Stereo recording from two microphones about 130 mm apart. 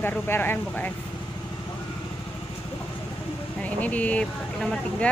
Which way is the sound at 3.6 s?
10° left (ahead or behind).